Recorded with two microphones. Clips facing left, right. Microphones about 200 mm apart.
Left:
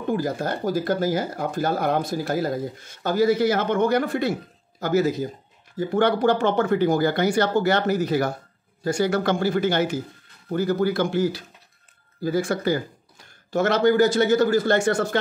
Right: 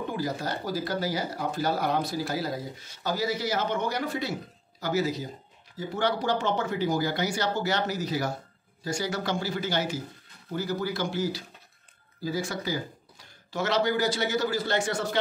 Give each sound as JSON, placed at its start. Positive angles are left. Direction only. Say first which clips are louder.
{"t": 0.1, "sound": "speech", "louder": "left 10 dB", "side_deg": 50}